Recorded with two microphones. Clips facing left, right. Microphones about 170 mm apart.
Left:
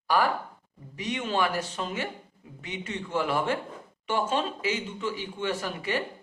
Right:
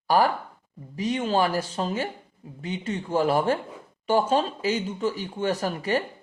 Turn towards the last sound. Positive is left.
turn(degrees=-40)  # may be behind; listen again after turning